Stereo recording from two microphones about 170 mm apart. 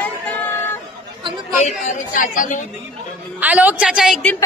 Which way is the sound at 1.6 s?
45° left (ahead or behind).